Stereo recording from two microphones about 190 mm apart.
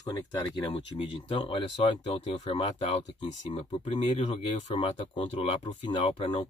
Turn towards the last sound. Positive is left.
turn(degrees=25)  # may be behind; listen again after turning